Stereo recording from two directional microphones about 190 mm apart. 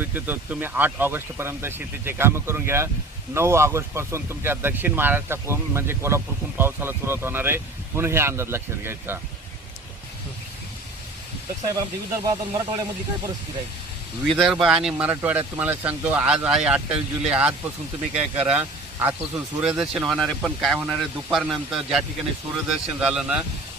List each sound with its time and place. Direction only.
0.0 s speech: 10° right (ahead or behind)
11.7 s speech: 20° right (ahead or behind)
14.2 s speech: centre (ahead or behind)